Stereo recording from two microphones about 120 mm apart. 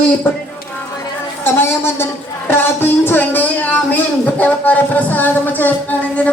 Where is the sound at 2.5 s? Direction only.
20° left (ahead or behind).